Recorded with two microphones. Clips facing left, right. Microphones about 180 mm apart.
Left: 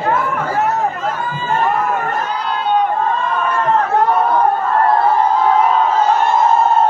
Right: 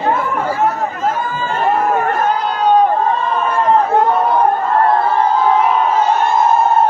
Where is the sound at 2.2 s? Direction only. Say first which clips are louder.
Right 5 dB; 40° right (ahead or behind).